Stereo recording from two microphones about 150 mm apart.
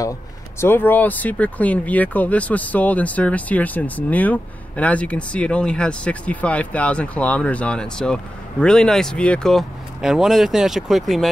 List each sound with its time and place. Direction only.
0.6 s speech: 15° left (ahead or behind)